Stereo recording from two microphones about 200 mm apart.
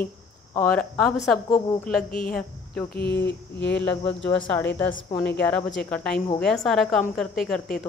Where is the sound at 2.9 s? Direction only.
55° left (ahead or behind).